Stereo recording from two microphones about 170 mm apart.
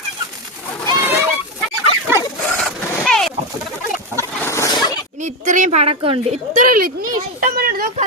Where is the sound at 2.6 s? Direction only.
Centre (ahead or behind).